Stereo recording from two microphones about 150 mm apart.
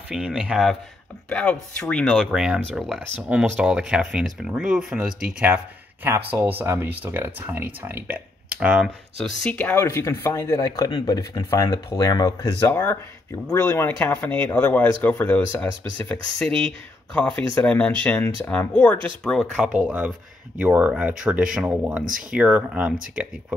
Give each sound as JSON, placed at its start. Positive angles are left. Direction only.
{"t": 0.1, "sound": "speech", "side_deg": -5}
{"t": 1.3, "sound": "speech", "side_deg": 5}
{"t": 9.2, "sound": "speech", "side_deg": 5}